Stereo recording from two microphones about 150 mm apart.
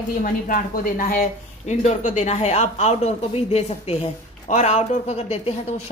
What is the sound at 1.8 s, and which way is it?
Speech, 50° left (ahead or behind).